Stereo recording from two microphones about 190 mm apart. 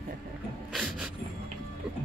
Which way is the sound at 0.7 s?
5° right (ahead or behind).